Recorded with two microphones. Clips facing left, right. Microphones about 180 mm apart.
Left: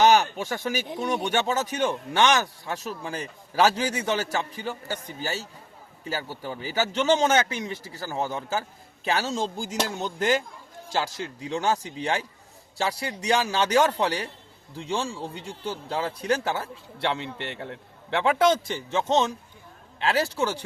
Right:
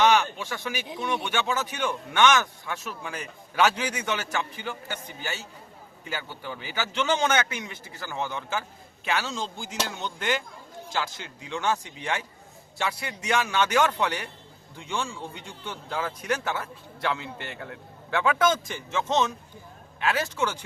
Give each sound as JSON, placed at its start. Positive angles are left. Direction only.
{"t": 0.0, "sound": "speech", "side_deg": 40}